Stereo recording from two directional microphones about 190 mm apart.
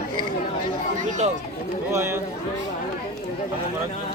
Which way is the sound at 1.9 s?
15° right (ahead or behind).